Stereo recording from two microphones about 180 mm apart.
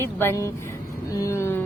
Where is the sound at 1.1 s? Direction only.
15° left (ahead or behind).